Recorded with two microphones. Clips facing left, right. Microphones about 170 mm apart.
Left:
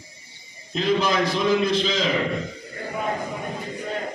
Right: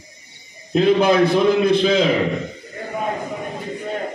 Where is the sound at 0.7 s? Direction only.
55° right (ahead or behind).